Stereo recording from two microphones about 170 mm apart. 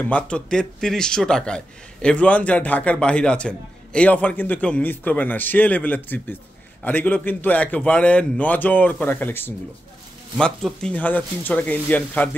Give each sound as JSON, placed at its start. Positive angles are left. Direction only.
{"t": 0.0, "sound": "a man's voice", "side_deg": 5}